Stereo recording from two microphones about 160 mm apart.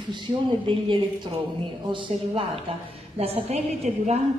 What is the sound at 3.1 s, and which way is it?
A woman's voice, 40° right (ahead or behind).